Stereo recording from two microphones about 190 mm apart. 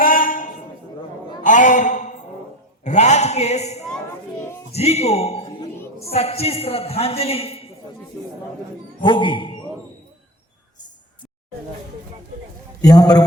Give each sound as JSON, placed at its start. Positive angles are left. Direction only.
{"t": 0.0, "sound": "a sound", "side_deg": 45}
{"t": 4.7, "sound": "a man's voice", "side_deg": 35}
{"t": 5.4, "sound": "music", "side_deg": 25}
{"t": 6.1, "sound": "a man's voice", "side_deg": 30}
{"t": 9.0, "sound": "speech", "side_deg": 25}
{"t": 12.8, "sound": "a man's voice", "side_deg": 20}